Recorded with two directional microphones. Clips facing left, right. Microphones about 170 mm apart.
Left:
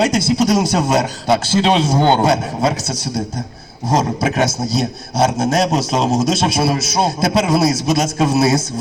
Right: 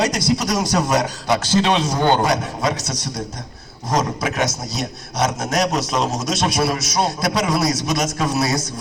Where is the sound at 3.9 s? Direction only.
30° left (ahead or behind).